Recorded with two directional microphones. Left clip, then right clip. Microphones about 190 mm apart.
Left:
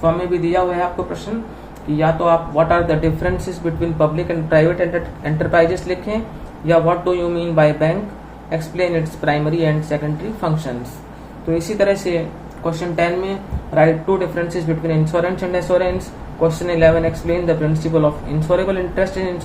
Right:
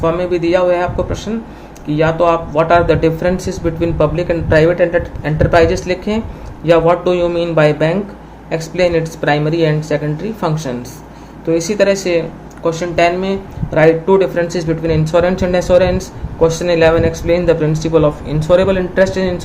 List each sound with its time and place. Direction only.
0.0 s speech: 45° right (ahead or behind)